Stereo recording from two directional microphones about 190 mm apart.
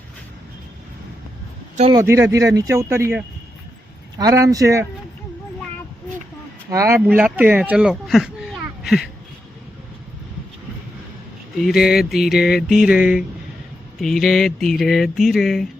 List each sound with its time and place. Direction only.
1.9 s speech: 15° right (ahead or behind)
6.7 s speech: 15° right (ahead or behind)
11.6 s a sound: 5° right (ahead or behind)